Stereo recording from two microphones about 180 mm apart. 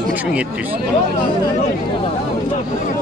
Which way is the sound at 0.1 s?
10° right (ahead or behind).